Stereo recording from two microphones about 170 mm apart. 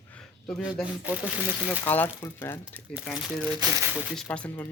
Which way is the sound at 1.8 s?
10° left (ahead or behind).